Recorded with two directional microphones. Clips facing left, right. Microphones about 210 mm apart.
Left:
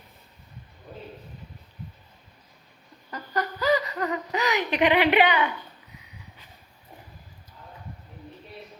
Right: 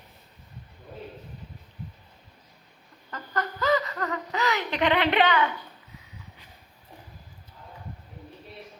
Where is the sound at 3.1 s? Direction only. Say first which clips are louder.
Left 2 dB; 15° left (ahead or behind).